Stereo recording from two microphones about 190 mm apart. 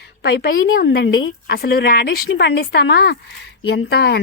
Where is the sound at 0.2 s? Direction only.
60° left (ahead or behind).